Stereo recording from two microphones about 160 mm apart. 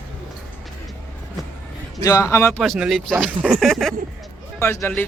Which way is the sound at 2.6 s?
Centre (ahead or behind).